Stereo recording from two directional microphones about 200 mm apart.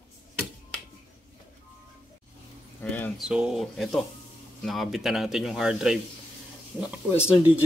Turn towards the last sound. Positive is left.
turn(degrees=-5)  # may be behind; listen again after turning